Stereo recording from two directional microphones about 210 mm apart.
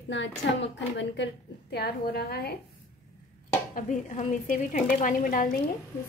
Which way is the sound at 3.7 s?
35° left (ahead or behind).